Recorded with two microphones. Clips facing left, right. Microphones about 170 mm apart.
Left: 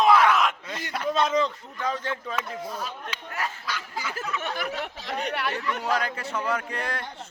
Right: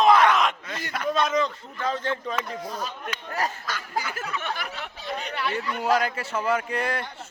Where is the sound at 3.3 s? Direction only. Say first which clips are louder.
Right 3 dB; 40° right (ahead or behind).